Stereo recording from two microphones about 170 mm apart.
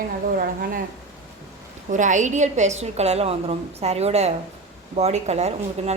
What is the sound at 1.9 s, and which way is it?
Speech, 45° right (ahead or behind).